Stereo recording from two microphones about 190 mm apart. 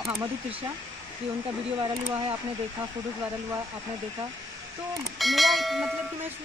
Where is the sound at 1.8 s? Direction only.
25° right (ahead or behind).